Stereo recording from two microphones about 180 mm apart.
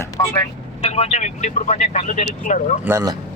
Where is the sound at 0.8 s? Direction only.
35° left (ahead or behind).